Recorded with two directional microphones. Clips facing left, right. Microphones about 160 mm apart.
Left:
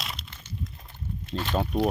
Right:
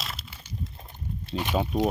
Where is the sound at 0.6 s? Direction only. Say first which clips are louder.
Even; 25° right (ahead or behind).